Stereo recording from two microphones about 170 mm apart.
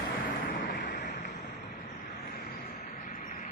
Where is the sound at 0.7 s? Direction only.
60° left (ahead or behind).